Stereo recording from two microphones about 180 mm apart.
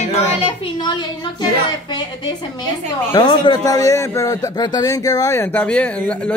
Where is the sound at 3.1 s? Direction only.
25° left (ahead or behind).